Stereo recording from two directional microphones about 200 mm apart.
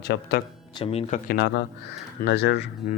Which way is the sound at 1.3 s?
55° left (ahead or behind).